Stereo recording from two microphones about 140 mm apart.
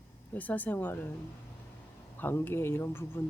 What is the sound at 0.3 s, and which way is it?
Speech, 10° left (ahead or behind).